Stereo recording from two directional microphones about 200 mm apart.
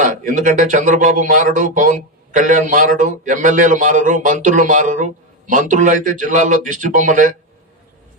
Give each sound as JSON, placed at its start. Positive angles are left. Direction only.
{"t": 0.0, "sound": "speech", "side_deg": -40}